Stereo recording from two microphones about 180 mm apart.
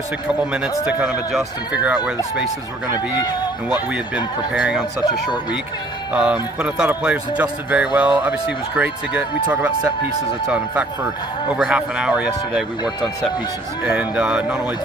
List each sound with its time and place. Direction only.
0.3 s speech: 5° right (ahead or behind)
3.2 s speech: 20° left (ahead or behind)
3.9 s speech: 5° right (ahead or behind)
6.1 s speech: 5° right (ahead or behind)
13.8 s speech: 5° right (ahead or behind)